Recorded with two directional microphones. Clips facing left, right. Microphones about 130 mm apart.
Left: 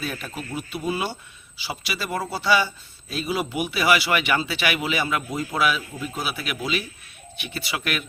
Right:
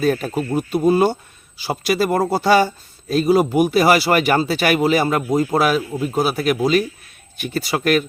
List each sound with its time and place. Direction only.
0.0 s speech: 45° right (ahead or behind)